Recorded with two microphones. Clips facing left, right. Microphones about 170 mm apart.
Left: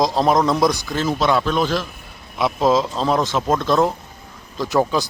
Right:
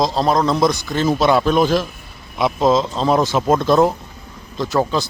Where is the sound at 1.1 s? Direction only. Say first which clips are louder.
Right 4 dB; 10° right (ahead or behind).